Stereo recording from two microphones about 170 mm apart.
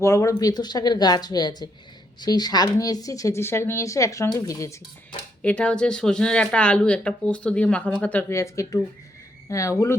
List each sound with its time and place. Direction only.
0.0 s speech: 15° left (ahead or behind)
5.4 s speech: 5° left (ahead or behind)